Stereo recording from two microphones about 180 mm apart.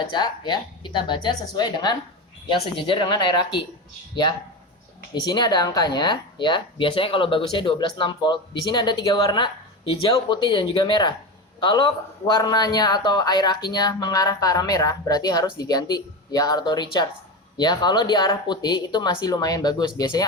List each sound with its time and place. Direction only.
0.0 s speech: 25° left (ahead or behind)